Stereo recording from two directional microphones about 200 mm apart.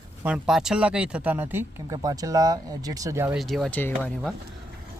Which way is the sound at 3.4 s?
Centre (ahead or behind).